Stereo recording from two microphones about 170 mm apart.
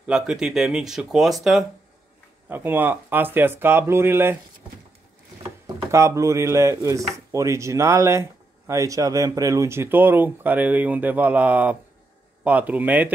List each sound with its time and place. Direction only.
0.0 s speech: 5° right (ahead or behind)
2.4 s speech: 10° right (ahead or behind)
5.9 s speech: 15° right (ahead or behind)